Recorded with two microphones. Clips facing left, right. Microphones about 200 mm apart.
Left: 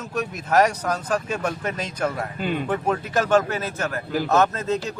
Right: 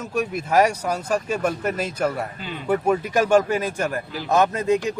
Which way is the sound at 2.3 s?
55° left (ahead or behind).